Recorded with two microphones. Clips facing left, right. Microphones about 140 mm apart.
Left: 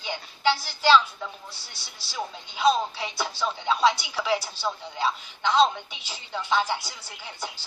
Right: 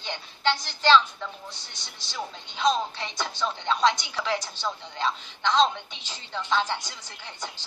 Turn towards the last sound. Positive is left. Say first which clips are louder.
# left 2 dB
turn(degrees=10)  # may be behind; listen again after turning